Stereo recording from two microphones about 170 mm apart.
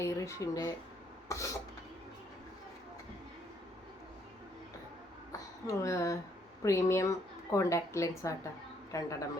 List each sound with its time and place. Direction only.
0.0 s speech: 20° left (ahead or behind)
5.6 s a woman's voice: 20° left (ahead or behind)